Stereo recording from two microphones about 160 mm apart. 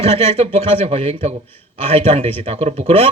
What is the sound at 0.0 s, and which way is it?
Speech, 40° right (ahead or behind).